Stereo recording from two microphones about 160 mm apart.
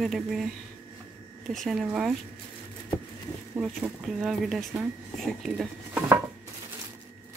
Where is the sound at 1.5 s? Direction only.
Centre (ahead or behind).